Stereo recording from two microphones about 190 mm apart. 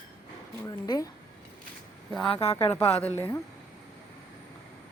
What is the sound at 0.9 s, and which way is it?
Speech, 20° left (ahead or behind).